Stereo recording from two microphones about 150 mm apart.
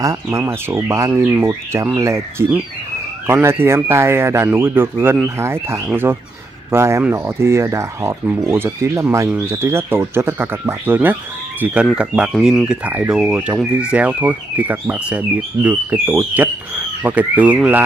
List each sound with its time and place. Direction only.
0.0 s speech: 20° right (ahead or behind)